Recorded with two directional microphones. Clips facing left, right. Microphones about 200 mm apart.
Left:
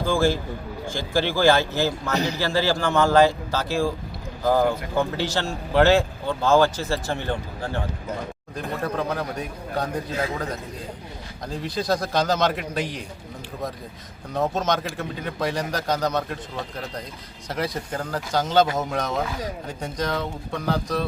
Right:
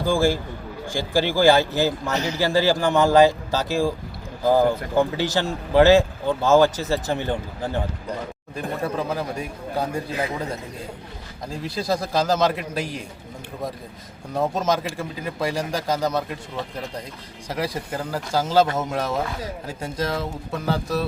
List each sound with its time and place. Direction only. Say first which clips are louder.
0.0 s speech: right 1 dB; 15° right (ahead or behind)
11.4 s a man's voice: even; 5° right (ahead or behind)
14.3 s speech: right 1 dB; 10° right (ahead or behind)
17.5 s a man's voice: right 1 dB; 5° right (ahead or behind)